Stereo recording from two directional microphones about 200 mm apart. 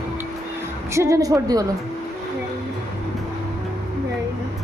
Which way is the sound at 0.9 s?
15° right (ahead or behind).